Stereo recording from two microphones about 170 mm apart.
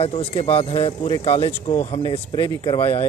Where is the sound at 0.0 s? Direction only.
35° left (ahead or behind).